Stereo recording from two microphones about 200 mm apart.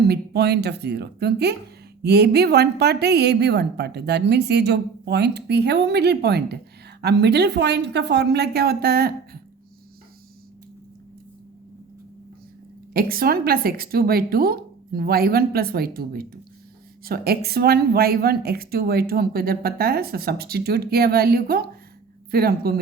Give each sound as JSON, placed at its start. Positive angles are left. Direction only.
{"t": 0.0, "sound": "a woman's voice", "side_deg": -55}
{"t": 12.9, "sound": "a woman's voice", "side_deg": -50}